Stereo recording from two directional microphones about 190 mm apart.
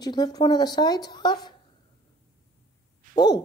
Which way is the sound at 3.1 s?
20° left (ahead or behind).